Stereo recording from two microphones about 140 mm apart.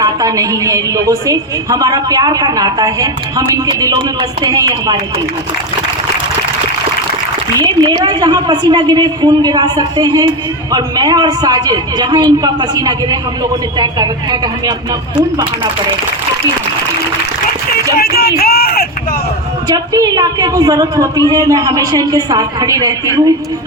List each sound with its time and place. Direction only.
0.0 s a woman's voice: 25° right (ahead or behind)
7.6 s a woman's voice: 30° right (ahead or behind)
17.9 s a sound: 90° left
19.6 s a woman's voice: 25° right (ahead or behind)